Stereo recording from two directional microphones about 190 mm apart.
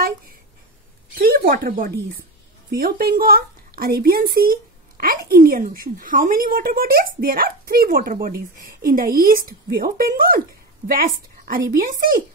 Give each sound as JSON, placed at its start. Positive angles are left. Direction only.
{"t": 1.1, "sound": "a woman's voice", "side_deg": -50}